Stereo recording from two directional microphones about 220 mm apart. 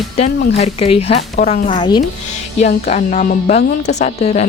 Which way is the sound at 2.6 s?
30° left (ahead or behind).